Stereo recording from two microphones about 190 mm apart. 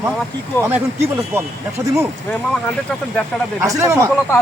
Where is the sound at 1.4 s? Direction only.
10° right (ahead or behind).